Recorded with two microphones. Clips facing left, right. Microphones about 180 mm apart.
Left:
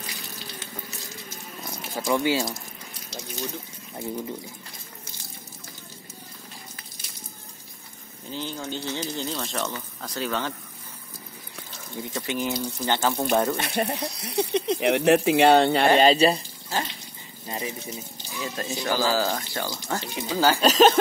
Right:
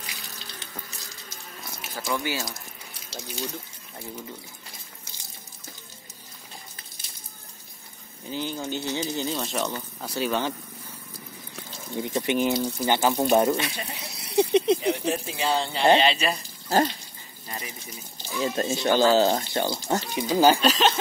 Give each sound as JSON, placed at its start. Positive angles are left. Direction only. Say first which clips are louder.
{"t": 1.7, "sound": "speech", "louder": "left 5 dB", "side_deg": 20}
{"t": 8.3, "sound": "speech", "louder": "right 2 dB", "side_deg": -10}
{"t": 12.0, "sound": "speech", "louder": "right 5 dB", "side_deg": -20}
{"t": 13.6, "sound": "speech", "louder": "left 5 dB", "side_deg": 55}
{"t": 14.4, "sound": "speech", "louder": "right 4 dB", "side_deg": -15}
{"t": 14.8, "sound": "speech", "louder": "left 6 dB", "side_deg": 75}
{"t": 16.0, "sound": "speech", "louder": "left 6 dB", "side_deg": 40}
{"t": 16.6, "sound": "speech", "louder": "right 8 dB", "side_deg": -45}
{"t": 17.5, "sound": "speech", "louder": "left 6 dB", "side_deg": 25}
{"t": 18.4, "sound": "speech", "louder": "right 5 dB", "side_deg": -25}
{"t": 20.6, "sound": "speech", "louder": "left 5 dB", "side_deg": 45}